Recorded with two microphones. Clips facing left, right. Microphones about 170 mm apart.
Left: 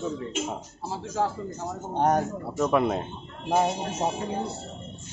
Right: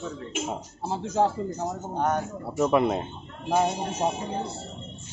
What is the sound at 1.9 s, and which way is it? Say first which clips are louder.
Speech: left 4 dB; 35° left (ahead or behind).